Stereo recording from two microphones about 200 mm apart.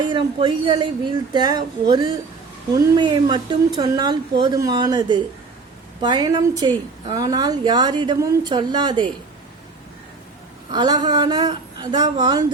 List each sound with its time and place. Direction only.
0.0 s a woman's voice: 25° right (ahead or behind)
10.7 s a woman's voice: 20° right (ahead or behind)